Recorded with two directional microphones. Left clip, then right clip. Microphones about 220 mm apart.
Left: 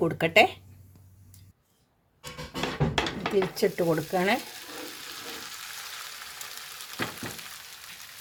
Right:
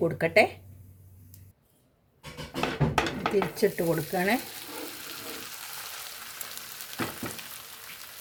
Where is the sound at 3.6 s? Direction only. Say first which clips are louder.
Left 1 dB; 40° left (ahead or behind).